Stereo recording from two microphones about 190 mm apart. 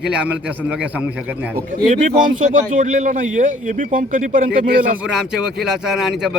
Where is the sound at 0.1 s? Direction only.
5° right (ahead or behind).